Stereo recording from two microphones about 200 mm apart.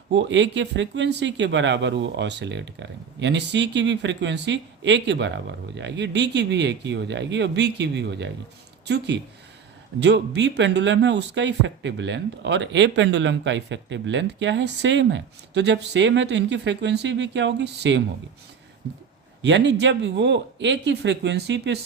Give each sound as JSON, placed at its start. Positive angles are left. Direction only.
{"t": 0.1, "sound": "speech", "side_deg": -65}
{"t": 10.0, "sound": "speech", "side_deg": -60}
{"t": 19.4, "sound": "speech", "side_deg": -65}